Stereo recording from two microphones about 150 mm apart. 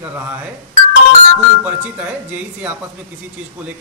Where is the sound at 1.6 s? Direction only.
10° right (ahead or behind).